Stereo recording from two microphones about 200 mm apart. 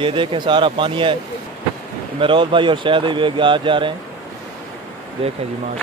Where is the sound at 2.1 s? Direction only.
25° right (ahead or behind).